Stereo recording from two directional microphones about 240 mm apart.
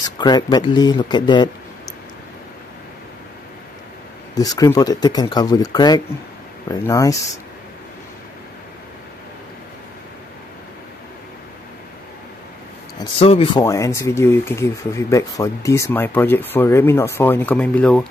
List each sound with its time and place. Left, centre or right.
0.0 s speech: centre
4.4 s speech: centre
13.0 s speech: left; by 18.0 s centre